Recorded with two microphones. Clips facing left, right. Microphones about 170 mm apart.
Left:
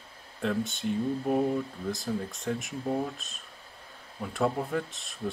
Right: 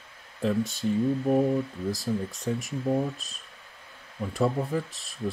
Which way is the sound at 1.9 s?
Centre (ahead or behind).